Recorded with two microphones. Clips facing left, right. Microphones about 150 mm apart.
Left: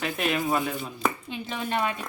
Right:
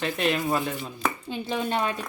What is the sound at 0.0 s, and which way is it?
Speech, 5° left (ahead or behind).